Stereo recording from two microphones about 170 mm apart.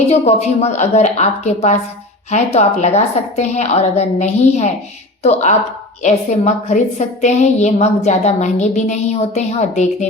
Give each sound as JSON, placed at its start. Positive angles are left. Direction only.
{"t": 0.1, "sound": "a woman's voice", "side_deg": 40}